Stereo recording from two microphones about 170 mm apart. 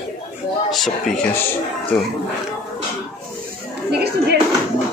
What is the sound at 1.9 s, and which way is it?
Speech, centre (ahead or behind).